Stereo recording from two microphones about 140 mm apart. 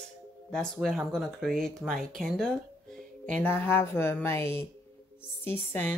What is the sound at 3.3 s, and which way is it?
Speech, 15° left (ahead or behind).